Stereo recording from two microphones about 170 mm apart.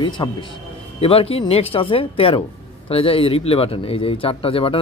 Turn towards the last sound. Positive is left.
turn(degrees=35)  # may be behind; listen again after turning